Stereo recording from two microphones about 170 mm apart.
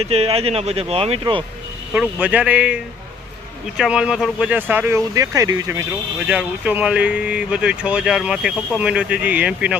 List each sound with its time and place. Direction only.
0.0 s speech: 35° right (ahead or behind)
1.9 s speech: 10° right (ahead or behind)
6.2 s speech: 10° right (ahead or behind)